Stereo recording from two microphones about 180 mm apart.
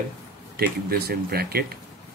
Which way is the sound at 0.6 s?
60° right (ahead or behind).